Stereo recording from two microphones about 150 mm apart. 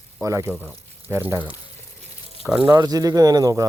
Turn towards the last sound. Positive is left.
turn(degrees=-25)  # may be behind; listen again after turning